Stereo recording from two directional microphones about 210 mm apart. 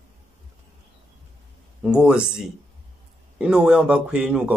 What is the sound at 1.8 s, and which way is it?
Speech, 5° right (ahead or behind).